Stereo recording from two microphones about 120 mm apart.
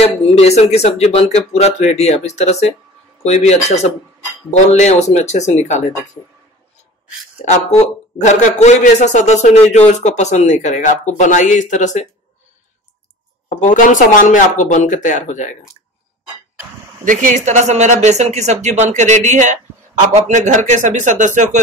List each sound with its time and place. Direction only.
0.0 s speech: 60° left (ahead or behind); by 5.9 s 75° left (ahead or behind)
8.2 s a man's voice: 80° left
13.5 s speech: 90° left
17.0 s speech: 90° right